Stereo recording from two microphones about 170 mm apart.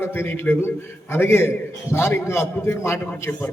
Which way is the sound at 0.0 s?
15° left (ahead or behind).